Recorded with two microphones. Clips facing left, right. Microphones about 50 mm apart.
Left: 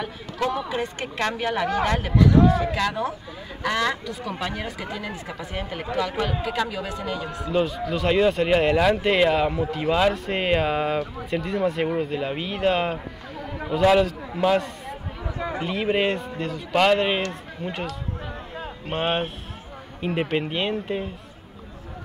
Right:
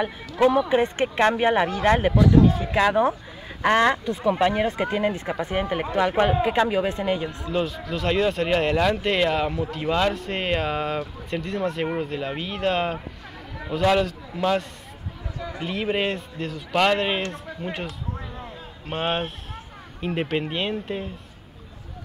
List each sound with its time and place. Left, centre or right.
0.0 s speech: right
0.7 s speech: right
2.3 s speech: left
2.7 s speech: right
7.2 s speech: left
7.5 s speech: centre
15.3 s a sound: left
15.6 s speech: centre
18.9 s speech: centre